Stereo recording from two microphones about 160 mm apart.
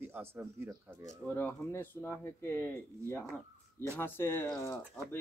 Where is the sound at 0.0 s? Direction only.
15° right (ahead or behind).